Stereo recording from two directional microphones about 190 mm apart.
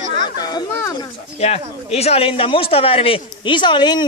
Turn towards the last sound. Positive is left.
turn(degrees=25)  # may be behind; listen again after turning